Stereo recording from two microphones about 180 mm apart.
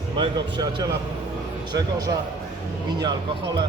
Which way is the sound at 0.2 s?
25° right (ahead or behind).